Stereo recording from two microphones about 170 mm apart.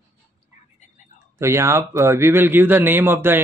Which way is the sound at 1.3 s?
15° right (ahead or behind).